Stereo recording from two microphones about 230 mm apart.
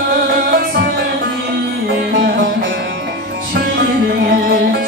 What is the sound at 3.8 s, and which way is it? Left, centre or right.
Music, right.